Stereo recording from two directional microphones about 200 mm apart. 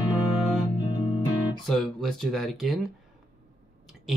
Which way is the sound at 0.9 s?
30° left (ahead or behind).